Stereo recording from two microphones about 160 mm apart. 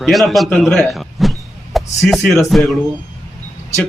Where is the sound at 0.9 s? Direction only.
Centre (ahead or behind).